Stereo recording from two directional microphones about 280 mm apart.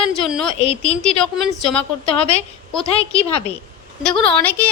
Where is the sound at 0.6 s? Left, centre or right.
Left.